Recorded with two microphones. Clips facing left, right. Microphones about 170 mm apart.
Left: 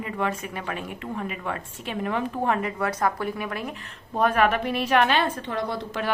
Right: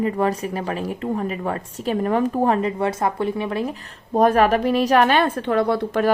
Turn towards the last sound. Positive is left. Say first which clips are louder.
# right 9 dB
turn(degrees=-60)  # may be behind; listen again after turning